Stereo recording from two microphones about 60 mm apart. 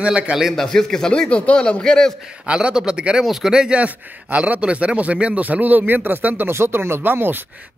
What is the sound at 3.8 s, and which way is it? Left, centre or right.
Speech, right.